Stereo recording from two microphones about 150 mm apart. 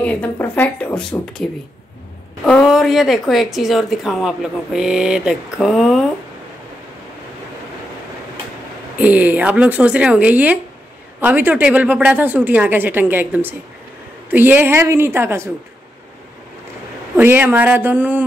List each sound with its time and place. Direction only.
0.0 s speech: 10° left (ahead or behind)
8.9 s speech: 10° right (ahead or behind)
17.2 s speech: 15° right (ahead or behind)